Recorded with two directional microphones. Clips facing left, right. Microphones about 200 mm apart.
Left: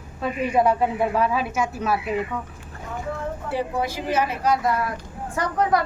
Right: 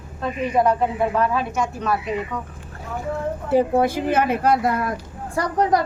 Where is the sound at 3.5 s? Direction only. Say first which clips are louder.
Right 9 dB; 50° right (ahead or behind).